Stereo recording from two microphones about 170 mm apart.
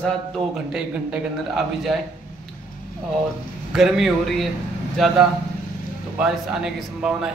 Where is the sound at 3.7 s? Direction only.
Centre (ahead or behind).